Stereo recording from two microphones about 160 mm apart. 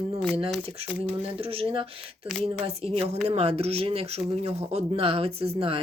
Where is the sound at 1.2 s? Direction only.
35° right (ahead or behind).